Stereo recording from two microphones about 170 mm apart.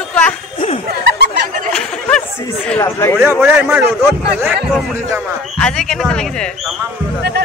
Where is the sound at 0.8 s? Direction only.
80° right.